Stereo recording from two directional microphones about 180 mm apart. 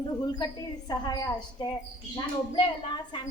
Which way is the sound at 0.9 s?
20° left (ahead or behind).